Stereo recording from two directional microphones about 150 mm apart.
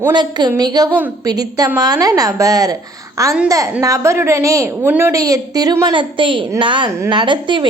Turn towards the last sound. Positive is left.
turn(degrees=-30)  # may be behind; listen again after turning